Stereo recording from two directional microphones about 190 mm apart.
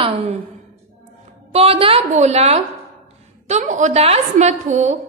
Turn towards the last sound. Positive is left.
turn(degrees=-40)  # may be behind; listen again after turning